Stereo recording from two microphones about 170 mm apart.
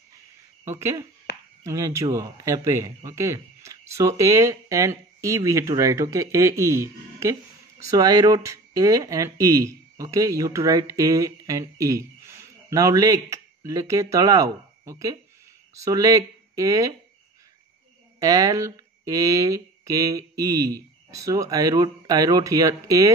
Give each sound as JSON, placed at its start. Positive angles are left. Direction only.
{"t": 0.7, "sound": "a man's voice", "side_deg": -15}
{"t": 18.2, "sound": "speech", "side_deg": -20}